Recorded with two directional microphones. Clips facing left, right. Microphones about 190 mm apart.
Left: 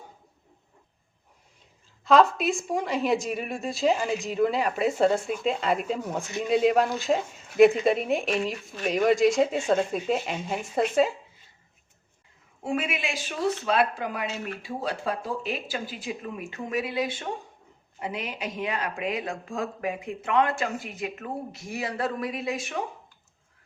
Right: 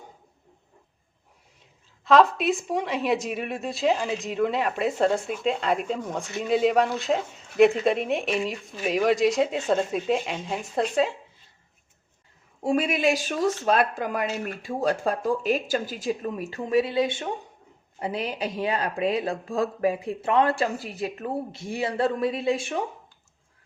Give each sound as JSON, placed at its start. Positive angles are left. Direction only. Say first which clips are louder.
{"t": 2.0, "sound": "a woman's voice", "louder": "right 1 dB", "side_deg": 0}
{"t": 12.6, "sound": "speech", "louder": "right 7 dB", "side_deg": -40}